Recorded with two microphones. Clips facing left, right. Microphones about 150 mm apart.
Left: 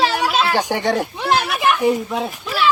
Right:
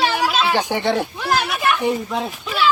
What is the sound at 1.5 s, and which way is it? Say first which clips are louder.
Children playing: left 3 dB; centre (ahead or behind).